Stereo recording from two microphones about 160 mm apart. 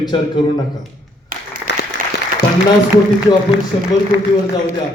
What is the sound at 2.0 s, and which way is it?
Applause, 60° right (ahead or behind).